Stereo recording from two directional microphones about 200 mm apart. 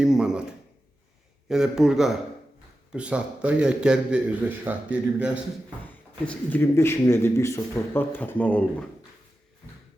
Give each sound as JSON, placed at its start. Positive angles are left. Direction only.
{"t": 0.0, "sound": "speech", "side_deg": -5}
{"t": 1.5, "sound": "a man's voice", "side_deg": 0}
{"t": 6.2, "sound": "speech", "side_deg": 10}